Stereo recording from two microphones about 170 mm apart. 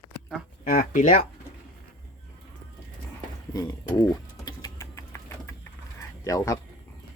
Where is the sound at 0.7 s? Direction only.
55° left (ahead or behind).